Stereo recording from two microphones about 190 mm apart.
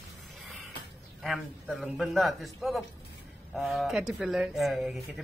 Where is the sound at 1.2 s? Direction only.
Centre (ahead or behind).